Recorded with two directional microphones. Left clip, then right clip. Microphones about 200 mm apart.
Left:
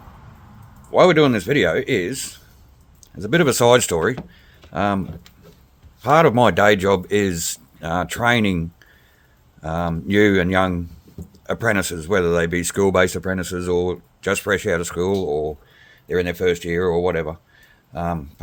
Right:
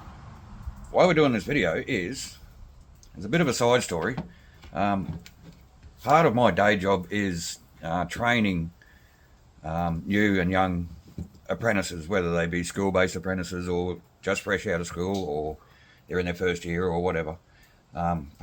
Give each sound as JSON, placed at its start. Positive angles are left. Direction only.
{"t": 0.9, "sound": "speech", "side_deg": 60}
{"t": 6.0, "sound": "speech", "side_deg": 65}